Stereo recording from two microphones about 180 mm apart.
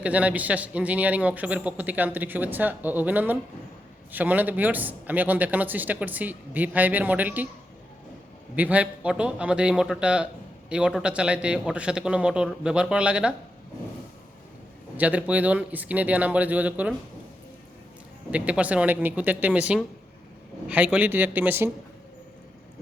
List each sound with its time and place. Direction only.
0.0 s a man's voice: 10° right (ahead or behind)
8.5 s a man's voice: 10° right (ahead or behind)
14.9 s a man's voice: 10° right (ahead or behind)
18.3 s a man's voice: 5° right (ahead or behind)